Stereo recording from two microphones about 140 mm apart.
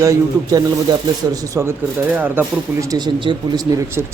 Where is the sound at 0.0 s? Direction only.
25° right (ahead or behind).